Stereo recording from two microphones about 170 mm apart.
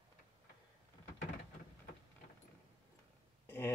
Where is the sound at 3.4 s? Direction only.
10° left (ahead or behind).